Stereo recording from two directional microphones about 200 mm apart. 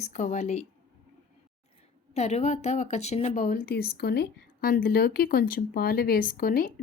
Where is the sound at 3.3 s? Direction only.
45° left (ahead or behind).